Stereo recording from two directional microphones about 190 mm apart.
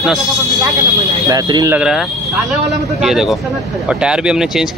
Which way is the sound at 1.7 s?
Centre (ahead or behind).